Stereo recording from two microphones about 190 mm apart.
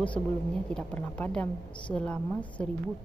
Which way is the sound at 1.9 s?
5° left (ahead or behind).